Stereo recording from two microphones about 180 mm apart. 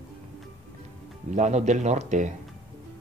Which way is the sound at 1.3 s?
40° right (ahead or behind).